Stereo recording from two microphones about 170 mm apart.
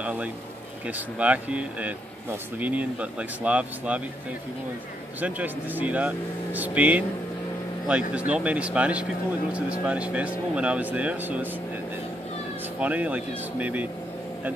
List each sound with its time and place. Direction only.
0.8 s speech: 10° right (ahead or behind)
5.2 s speech: 10° right (ahead or behind)
12.7 s speech: 10° right (ahead or behind)